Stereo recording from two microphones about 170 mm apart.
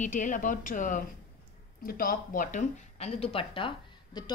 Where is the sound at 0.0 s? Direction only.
50° left (ahead or behind).